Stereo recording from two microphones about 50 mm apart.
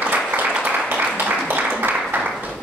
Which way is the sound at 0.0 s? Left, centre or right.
Right.